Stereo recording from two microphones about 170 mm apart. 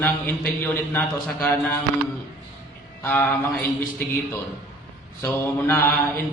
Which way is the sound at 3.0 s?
10° left (ahead or behind).